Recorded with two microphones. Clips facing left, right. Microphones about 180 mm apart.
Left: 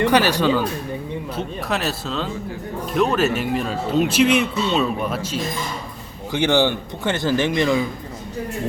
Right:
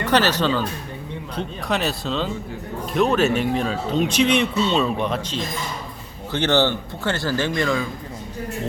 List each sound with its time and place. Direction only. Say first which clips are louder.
0.0 s a man's voice: left 2 dB; 10° left (ahead or behind)